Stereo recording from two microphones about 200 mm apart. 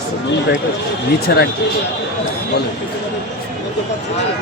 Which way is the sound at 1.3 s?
50° left (ahead or behind).